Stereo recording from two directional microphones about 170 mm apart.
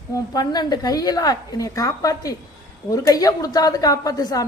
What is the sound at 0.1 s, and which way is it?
A woman's voice, 25° left (ahead or behind).